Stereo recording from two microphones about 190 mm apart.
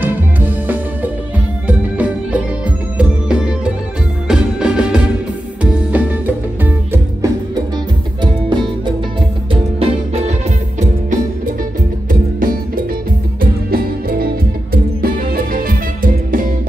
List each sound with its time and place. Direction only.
0.0 s music: 10° right (ahead or behind)
9.5 s music: 30° right (ahead or behind)
12.1 s music: 45° right (ahead or behind)